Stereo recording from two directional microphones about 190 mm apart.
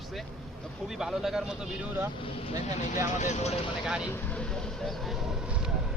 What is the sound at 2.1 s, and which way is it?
Speech, 30° left (ahead or behind).